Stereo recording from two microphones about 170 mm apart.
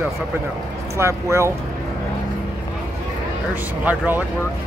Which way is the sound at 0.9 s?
15° right (ahead or behind).